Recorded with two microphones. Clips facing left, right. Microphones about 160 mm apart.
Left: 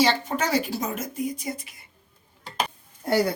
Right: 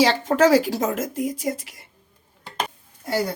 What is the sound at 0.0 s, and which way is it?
Speech, 90° right.